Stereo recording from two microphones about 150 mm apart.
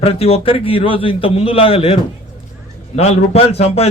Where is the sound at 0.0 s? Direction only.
40° left (ahead or behind).